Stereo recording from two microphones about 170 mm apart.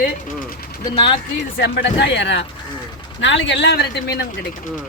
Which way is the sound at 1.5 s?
80° left.